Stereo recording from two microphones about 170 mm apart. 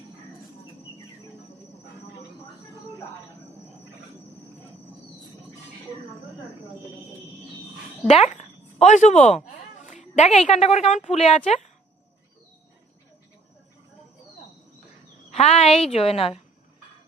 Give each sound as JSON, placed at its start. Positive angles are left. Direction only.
{"t": 8.0, "sound": "a woman's voice", "side_deg": 40}
{"t": 15.3, "sound": "a woman's voice", "side_deg": 40}